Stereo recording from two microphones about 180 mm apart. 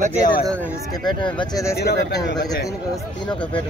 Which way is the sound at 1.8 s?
65° left (ahead or behind).